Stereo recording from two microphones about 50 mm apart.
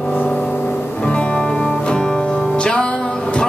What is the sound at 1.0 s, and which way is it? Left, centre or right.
Music, left.